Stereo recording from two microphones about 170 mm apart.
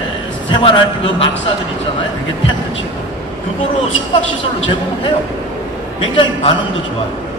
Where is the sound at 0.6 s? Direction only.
30° left (ahead or behind).